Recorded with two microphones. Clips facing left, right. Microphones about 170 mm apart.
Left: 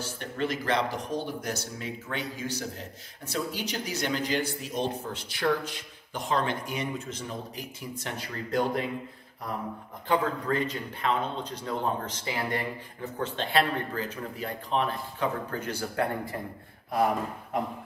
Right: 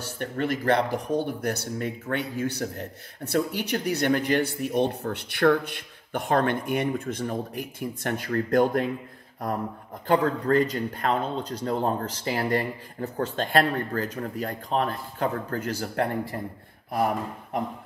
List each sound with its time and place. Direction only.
0.0 s speech: 55° right (ahead or behind)
10.0 s speech: 45° right (ahead or behind)